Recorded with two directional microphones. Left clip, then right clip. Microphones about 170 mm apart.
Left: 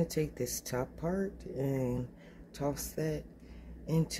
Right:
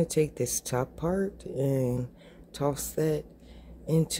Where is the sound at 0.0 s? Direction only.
25° right (ahead or behind).